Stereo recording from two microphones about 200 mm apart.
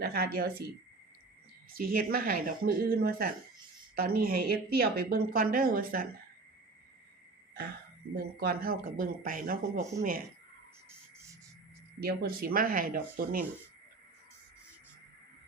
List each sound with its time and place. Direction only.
0.0 s speech: 50° right (ahead or behind)
1.7 s speech: 45° right (ahead or behind)
8.1 s speech: 50° right (ahead or behind)
11.9 s speech: 50° right (ahead or behind)